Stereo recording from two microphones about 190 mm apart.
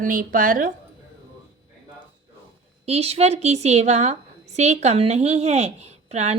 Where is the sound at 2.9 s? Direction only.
35° right (ahead or behind).